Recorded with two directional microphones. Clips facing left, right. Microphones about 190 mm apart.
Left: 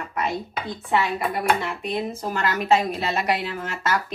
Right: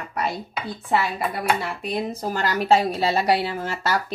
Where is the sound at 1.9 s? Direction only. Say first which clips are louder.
Right 2 dB; 35° right (ahead or behind).